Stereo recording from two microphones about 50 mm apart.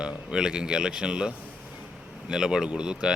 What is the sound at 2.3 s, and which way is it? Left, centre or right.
Speech, centre.